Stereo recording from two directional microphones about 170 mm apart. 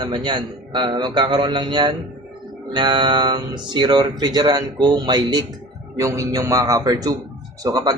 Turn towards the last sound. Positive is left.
turn(degrees=-25)  # may be behind; listen again after turning